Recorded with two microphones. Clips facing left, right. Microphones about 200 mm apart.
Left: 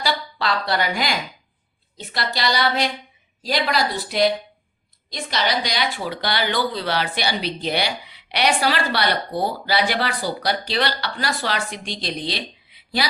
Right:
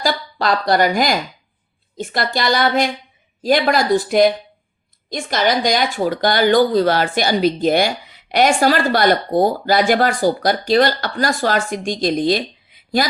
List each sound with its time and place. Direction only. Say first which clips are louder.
0.0 s speech: right 4 dB; 45° right (ahead or behind)